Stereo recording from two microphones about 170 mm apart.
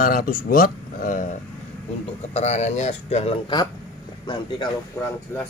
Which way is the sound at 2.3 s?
40° left (ahead or behind).